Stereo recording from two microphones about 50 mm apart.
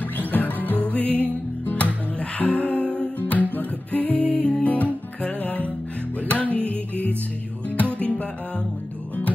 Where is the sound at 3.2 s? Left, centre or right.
Left.